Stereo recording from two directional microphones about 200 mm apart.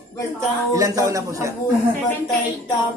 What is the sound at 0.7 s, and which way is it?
Speech, 15° right (ahead or behind).